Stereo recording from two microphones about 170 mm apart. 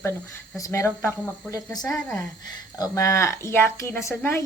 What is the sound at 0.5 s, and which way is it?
Speech, 15° left (ahead or behind).